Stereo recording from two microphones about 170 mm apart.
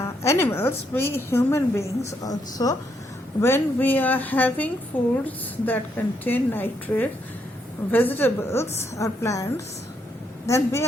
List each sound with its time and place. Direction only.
0.0 s a woman's voice: 15° left (ahead or behind)